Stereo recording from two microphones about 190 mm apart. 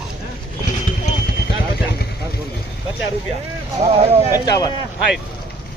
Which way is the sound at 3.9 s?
30° right (ahead or behind).